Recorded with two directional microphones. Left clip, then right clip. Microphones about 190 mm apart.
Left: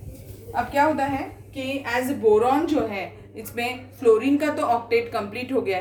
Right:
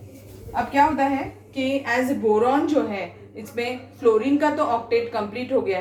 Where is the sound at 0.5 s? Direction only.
40° left (ahead or behind).